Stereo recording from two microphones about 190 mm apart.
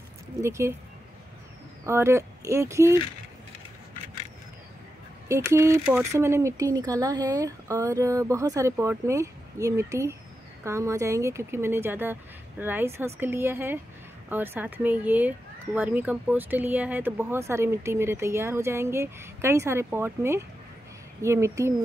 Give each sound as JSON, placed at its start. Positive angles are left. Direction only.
{"t": 0.4, "sound": "speech", "side_deg": -15}
{"t": 1.9, "sound": "speech", "side_deg": -15}
{"t": 5.3, "sound": "speech", "side_deg": -15}